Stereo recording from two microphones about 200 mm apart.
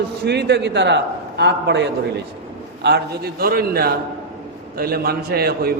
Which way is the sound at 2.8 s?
55° right (ahead or behind).